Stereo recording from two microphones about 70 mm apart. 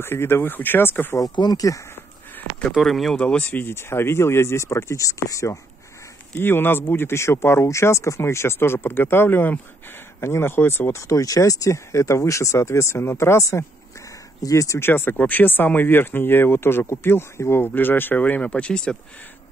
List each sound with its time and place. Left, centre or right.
0.0 s speech: left
1.1 s speech: left
2.8 s speech: centre
3.2 s speech: centre
3.4 s speech: left
6.4 s speech: left
14.8 s speech: left; by 18.9 s centre